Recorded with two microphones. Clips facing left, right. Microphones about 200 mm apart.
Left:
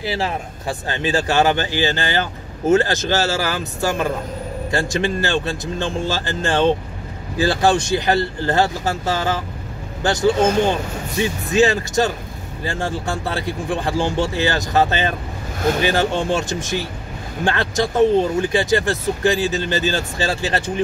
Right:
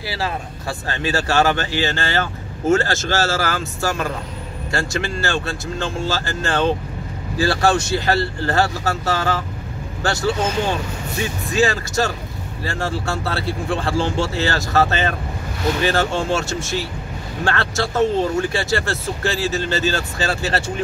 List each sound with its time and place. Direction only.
0.0 s speech: 20° left (ahead or behind)
11.4 s speech: 20° left (ahead or behind)